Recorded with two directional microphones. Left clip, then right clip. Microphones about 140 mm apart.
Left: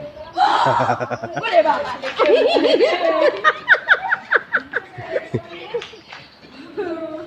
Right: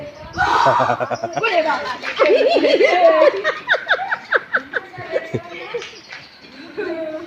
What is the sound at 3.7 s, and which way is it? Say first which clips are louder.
Laughter: left 2 dB; 10° left (ahead or behind).